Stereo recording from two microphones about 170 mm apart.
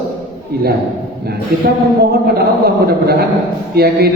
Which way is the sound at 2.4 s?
65° right (ahead or behind).